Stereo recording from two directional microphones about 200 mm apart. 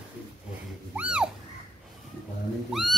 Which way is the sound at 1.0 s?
5° right (ahead or behind).